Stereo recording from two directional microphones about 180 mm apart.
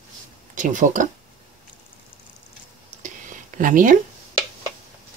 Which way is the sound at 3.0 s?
45° right (ahead or behind).